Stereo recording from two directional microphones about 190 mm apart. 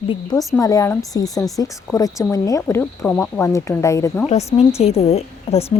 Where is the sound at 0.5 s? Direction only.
15° left (ahead or behind).